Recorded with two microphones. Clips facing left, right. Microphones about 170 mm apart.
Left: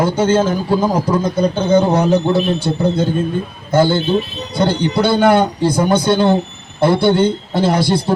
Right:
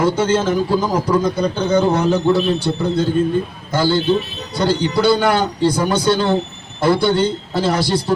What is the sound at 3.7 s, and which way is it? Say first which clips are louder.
Speech: left 2 dB; 25° left (ahead or behind).